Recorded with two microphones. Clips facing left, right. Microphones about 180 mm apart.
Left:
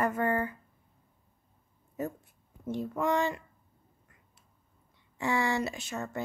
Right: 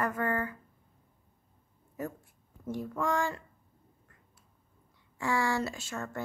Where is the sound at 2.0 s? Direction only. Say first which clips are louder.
Left 3 dB; 20° left (ahead or behind).